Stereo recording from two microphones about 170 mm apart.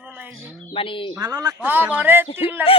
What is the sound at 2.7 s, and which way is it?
Speech, 35° left (ahead or behind).